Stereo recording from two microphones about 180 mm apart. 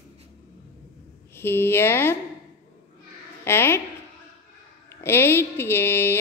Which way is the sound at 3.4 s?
15° left (ahead or behind).